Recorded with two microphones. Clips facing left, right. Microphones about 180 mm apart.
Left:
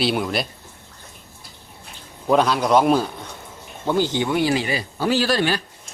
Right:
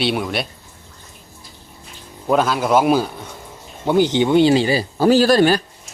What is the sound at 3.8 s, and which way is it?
Speech, 20° right (ahead or behind).